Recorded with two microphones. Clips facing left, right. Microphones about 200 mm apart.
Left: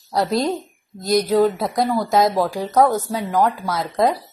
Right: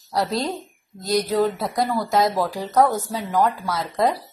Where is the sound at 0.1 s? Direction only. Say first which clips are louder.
Left 4 dB; 15° left (ahead or behind).